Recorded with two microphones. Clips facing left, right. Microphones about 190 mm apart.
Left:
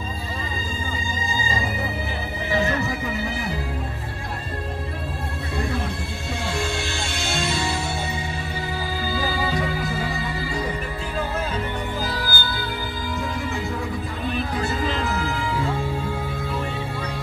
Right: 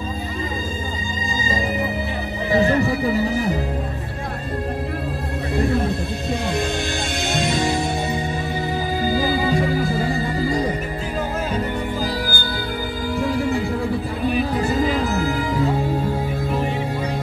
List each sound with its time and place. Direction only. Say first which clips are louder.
2.5 s music: right 6 dB; 35° right (ahead or behind)
7.2 s music: right 4 dB; 15° right (ahead or behind)
9.0 s music: right 6 dB; 40° right (ahead or behind)
12.0 s music: right 4 dB; 10° right (ahead or behind)
13.3 s music: right 8 dB; 35° right (ahead or behind)